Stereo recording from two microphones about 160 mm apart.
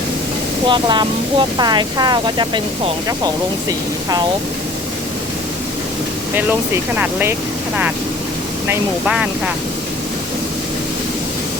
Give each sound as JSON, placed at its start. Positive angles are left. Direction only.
{"t": 0.7, "sound": "speech", "side_deg": -30}
{"t": 6.3, "sound": "speech", "side_deg": -10}
{"t": 9.0, "sound": "speech", "side_deg": -5}